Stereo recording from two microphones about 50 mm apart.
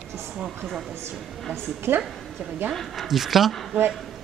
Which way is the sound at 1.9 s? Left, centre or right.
Right.